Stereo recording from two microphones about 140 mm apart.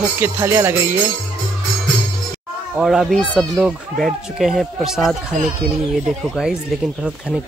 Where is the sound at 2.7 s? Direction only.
Centre (ahead or behind).